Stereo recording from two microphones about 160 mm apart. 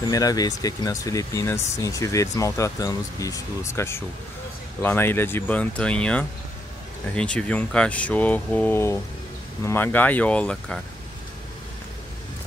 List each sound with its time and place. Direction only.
0.0 s speech: 25° left (ahead or behind); by 10.8 s 5° left (ahead or behind)